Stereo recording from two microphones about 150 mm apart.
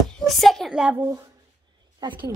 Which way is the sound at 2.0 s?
30° right (ahead or behind).